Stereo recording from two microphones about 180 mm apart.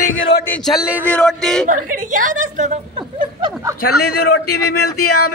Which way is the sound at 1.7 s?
45° right (ahead or behind).